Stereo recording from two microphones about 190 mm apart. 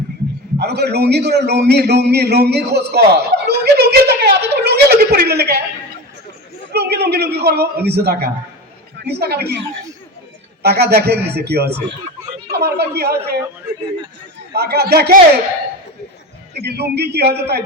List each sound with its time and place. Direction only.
0.6 s a man's voice: 60° right (ahead or behind)
6.7 s a man's voice: 60° right (ahead or behind)
10.6 s a man's voice: 60° right (ahead or behind)
14.5 s a man's voice: 60° right (ahead or behind)
16.6 s a man's voice: 60° right (ahead or behind)